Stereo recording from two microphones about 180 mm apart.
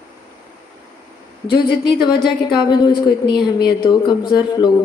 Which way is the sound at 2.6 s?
25° left (ahead or behind).